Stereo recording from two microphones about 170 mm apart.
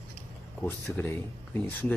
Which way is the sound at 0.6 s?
10° left (ahead or behind).